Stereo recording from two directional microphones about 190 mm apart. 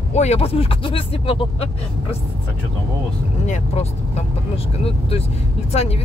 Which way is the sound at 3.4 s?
40° left (ahead or behind).